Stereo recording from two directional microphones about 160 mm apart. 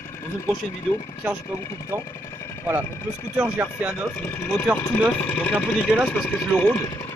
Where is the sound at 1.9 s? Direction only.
15° right (ahead or behind).